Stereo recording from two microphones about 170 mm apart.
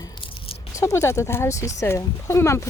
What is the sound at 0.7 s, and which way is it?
Speech, 20° left (ahead or behind).